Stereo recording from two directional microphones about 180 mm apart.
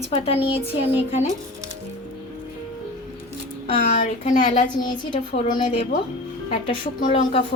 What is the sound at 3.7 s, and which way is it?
A woman's voice, 40° left (ahead or behind).